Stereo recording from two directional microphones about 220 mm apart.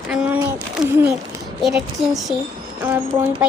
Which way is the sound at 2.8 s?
15° right (ahead or behind).